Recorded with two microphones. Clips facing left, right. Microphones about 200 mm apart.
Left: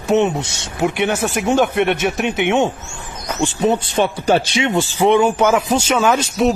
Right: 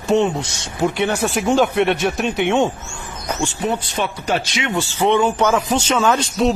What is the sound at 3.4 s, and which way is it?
Speech, 25° left (ahead or behind).